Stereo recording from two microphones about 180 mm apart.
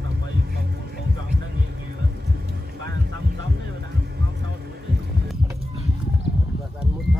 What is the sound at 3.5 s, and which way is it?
Heart sounds, 65° right (ahead or behind).